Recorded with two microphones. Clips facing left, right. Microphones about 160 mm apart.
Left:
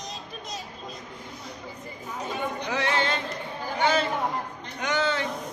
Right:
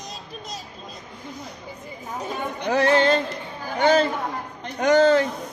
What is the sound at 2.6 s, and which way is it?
Music, 45° right (ahead or behind).